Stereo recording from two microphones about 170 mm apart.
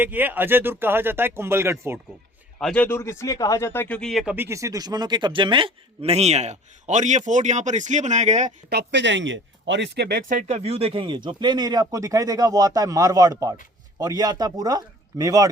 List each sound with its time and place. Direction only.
0.0 s speech: 10° right (ahead or behind)
2.6 s speech: centre (ahead or behind)
2.8 s speech: 15° left (ahead or behind); by 4.4 s centre (ahead or behind)
4.4 s a man's voice: 15° right (ahead or behind); by 8.5 s 45° right (ahead or behind)
8.7 s speech: 80° right; by 15.4 s 20° right (ahead or behind)